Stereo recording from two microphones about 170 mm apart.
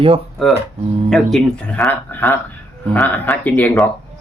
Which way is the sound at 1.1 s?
Centre (ahead or behind).